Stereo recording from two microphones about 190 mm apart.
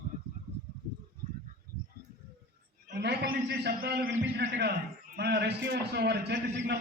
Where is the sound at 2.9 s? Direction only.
60° right (ahead or behind).